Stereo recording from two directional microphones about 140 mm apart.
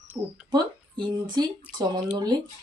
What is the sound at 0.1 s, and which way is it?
Speech, 10° right (ahead or behind).